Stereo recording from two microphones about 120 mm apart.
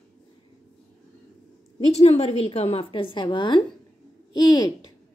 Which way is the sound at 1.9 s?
65° left (ahead or behind).